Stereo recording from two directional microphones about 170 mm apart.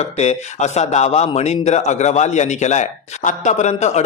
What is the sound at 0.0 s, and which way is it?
A man's voice, 40° left (ahead or behind).